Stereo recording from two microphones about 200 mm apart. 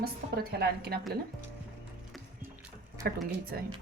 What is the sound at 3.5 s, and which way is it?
Speech, 50° right (ahead or behind).